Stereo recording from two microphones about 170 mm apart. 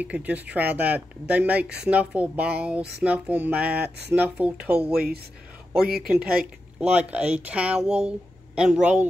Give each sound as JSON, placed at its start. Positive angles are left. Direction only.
{"t": 0.0, "sound": "speech", "side_deg": -10}
{"t": 3.7, "sound": "a sound", "side_deg": -70}
{"t": 4.1, "sound": "speech", "side_deg": -10}
{"t": 5.8, "sound": "speech", "side_deg": -65}
{"t": 6.8, "sound": "speech", "side_deg": -10}